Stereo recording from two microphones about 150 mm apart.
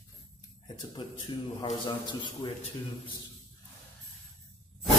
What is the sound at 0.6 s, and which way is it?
Speech, 30° left (ahead or behind).